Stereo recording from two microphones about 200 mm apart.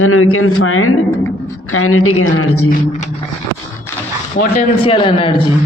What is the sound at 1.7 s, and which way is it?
Speech, 90° left.